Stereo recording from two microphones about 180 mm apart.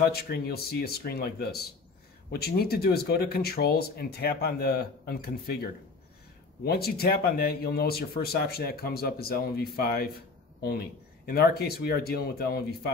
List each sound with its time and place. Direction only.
0.0 s speech: 60° left (ahead or behind)